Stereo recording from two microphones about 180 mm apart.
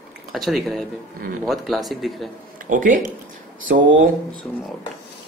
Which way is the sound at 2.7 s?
45° right (ahead or behind).